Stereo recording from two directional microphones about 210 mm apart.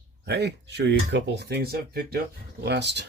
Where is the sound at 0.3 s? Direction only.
50° right (ahead or behind).